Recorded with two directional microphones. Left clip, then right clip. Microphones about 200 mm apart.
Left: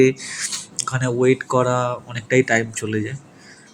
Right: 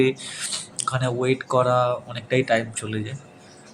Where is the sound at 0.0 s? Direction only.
15° left (ahead or behind).